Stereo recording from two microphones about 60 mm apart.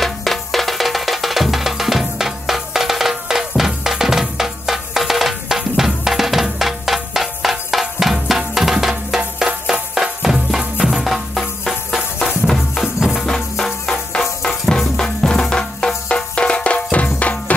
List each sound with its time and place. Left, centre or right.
0.0 s music: centre
13.2 s music: centre; by 17.6 s left